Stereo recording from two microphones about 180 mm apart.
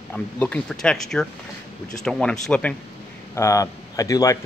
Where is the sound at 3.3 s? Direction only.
15° left (ahead or behind).